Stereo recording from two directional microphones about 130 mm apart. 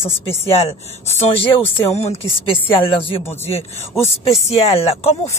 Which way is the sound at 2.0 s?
55° left (ahead or behind).